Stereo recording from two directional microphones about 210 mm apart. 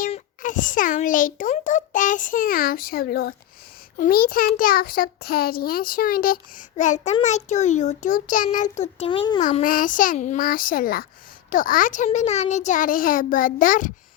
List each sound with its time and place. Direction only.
0.1 s a child's voice: 40° left (ahead or behind); by 9.4 s 20° left (ahead or behind)
9.4 s a child's voice: 35° left (ahead or behind)